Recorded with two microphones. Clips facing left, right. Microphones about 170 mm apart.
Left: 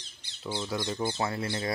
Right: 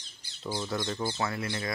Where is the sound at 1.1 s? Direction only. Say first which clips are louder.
Left 1 dB; 30° left (ahead or behind).